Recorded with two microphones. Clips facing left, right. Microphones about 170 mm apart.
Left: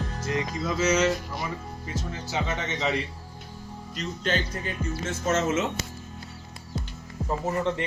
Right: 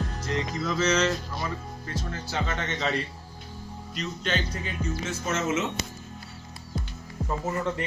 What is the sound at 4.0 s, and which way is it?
Speech, 40° left (ahead or behind).